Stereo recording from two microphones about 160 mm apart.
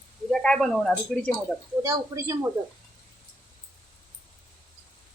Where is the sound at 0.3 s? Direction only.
5° left (ahead or behind).